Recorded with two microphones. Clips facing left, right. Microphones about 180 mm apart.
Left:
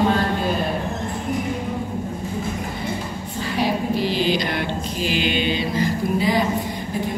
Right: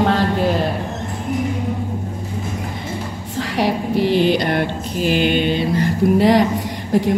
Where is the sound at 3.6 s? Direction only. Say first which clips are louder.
Right 3 dB; 65° right (ahead or behind).